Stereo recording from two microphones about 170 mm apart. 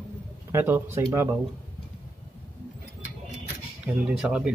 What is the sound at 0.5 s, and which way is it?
Speech, 15° right (ahead or behind).